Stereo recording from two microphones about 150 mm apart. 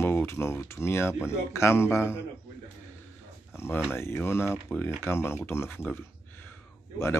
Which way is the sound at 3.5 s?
15° left (ahead or behind).